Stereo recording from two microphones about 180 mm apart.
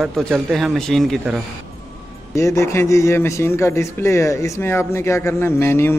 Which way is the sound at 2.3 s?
15° left (ahead or behind).